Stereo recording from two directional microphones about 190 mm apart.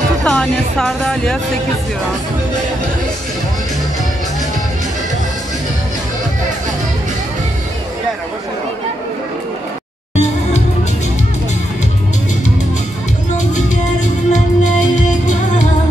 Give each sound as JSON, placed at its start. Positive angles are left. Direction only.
{"t": 0.2, "sound": "music", "side_deg": 5}
{"t": 10.1, "sound": "music", "side_deg": 35}
{"t": 14.0, "sound": "music", "side_deg": 40}